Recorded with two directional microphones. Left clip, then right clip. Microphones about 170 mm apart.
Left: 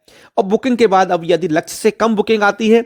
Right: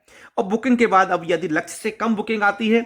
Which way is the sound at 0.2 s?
35° left (ahead or behind).